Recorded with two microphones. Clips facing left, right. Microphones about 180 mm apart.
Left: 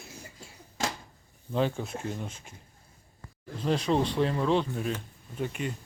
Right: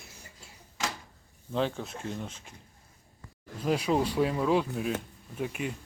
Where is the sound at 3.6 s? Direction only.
5° right (ahead or behind).